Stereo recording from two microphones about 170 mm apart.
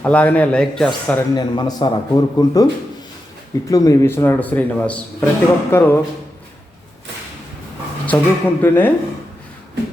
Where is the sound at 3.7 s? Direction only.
20° left (ahead or behind).